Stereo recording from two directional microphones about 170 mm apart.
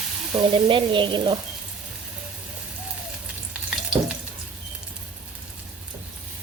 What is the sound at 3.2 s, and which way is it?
Frying, 5° right (ahead or behind).